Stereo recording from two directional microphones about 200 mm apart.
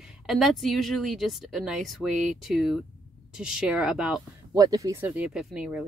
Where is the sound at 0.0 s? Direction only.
Centre (ahead or behind).